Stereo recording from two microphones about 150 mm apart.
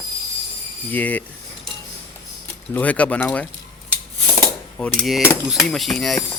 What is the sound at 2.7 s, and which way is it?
Speech, 10° left (ahead or behind).